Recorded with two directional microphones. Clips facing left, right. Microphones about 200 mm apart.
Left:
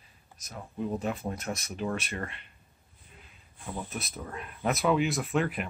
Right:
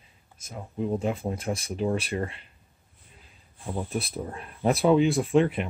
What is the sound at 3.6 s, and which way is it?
Speech, 30° right (ahead or behind).